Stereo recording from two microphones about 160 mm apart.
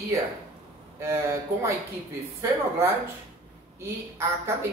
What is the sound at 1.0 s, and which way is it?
A woman's voice, 15° right (ahead or behind).